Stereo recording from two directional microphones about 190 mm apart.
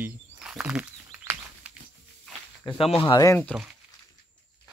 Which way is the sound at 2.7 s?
30° left (ahead or behind).